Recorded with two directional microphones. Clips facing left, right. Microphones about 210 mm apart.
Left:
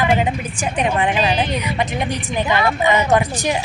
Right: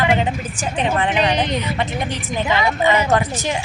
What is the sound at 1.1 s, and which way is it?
Speech, 20° right (ahead or behind).